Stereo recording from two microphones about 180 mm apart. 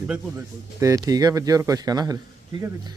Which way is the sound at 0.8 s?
20° right (ahead or behind).